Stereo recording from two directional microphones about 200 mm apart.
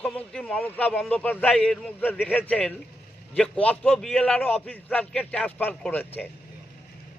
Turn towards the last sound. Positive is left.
turn(degrees=10)  # may be behind; listen again after turning